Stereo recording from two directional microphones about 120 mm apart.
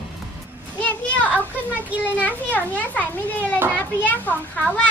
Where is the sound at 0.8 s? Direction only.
10° left (ahead or behind).